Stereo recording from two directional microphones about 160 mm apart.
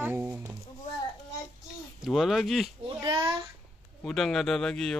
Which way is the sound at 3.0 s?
30° right (ahead or behind).